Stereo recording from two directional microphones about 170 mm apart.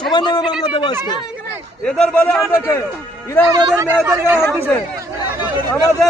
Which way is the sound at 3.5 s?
20° right (ahead or behind).